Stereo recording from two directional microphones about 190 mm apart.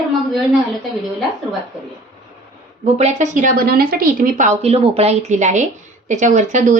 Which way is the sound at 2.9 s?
40° right (ahead or behind).